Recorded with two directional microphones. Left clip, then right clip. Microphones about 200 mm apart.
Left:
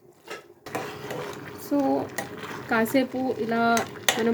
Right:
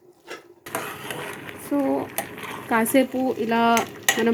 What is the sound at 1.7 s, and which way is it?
Dishes, 5° left (ahead or behind).